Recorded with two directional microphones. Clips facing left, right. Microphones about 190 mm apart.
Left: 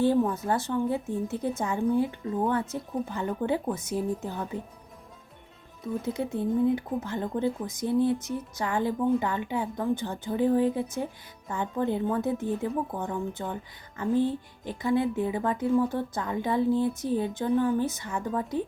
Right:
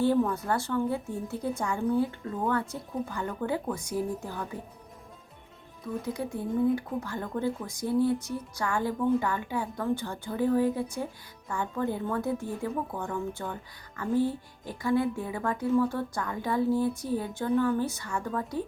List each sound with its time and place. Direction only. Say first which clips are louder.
0.0 s speech: left 1 dB; 20° left (ahead or behind)
6.1 s speech: left 3 dB; 25° left (ahead or behind)